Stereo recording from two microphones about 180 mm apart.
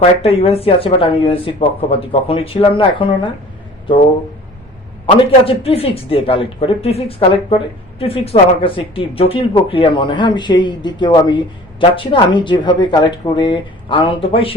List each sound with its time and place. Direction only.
0.2 s speech: 35° left (ahead or behind)
5.1 s speech: 30° left (ahead or behind)